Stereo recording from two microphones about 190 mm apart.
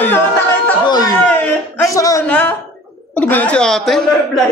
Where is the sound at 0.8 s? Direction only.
20° left (ahead or behind).